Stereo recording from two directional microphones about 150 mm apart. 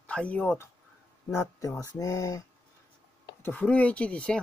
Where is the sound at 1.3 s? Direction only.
20° left (ahead or behind).